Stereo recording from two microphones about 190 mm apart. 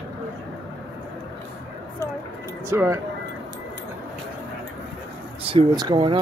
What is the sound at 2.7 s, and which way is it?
Speech, 15° right (ahead or behind).